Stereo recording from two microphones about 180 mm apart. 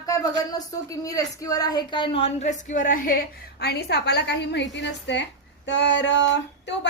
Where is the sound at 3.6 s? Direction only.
65° left (ahead or behind).